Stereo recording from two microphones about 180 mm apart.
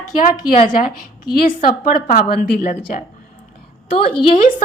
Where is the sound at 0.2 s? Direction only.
45° left (ahead or behind).